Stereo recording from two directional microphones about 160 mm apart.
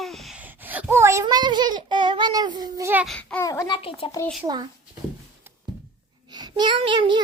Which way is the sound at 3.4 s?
20° left (ahead or behind).